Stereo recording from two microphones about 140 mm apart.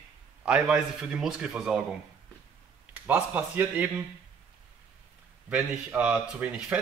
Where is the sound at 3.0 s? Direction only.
10° right (ahead or behind).